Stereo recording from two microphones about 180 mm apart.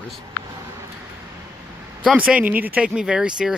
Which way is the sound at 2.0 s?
5° right (ahead or behind).